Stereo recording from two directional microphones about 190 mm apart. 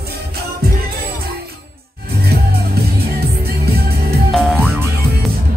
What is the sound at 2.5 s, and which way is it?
Music, 55° right (ahead or behind).